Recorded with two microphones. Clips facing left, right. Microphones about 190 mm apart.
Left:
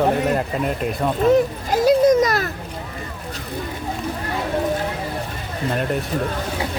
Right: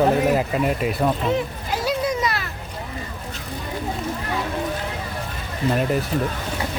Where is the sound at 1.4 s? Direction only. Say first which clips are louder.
Left 7 dB; 45° left (ahead or behind).